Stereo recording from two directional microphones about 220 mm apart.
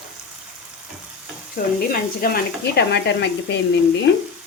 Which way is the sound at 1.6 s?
40° left (ahead or behind).